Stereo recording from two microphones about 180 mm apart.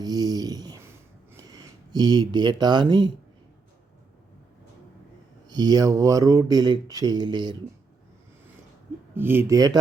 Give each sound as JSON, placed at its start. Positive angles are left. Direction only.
{"t": 0.0, "sound": "a sound", "side_deg": -20}
{"t": 1.3, "sound": "speech", "side_deg": -20}
{"t": 5.5, "sound": "speech", "side_deg": -20}
{"t": 9.1, "sound": "speech", "side_deg": -10}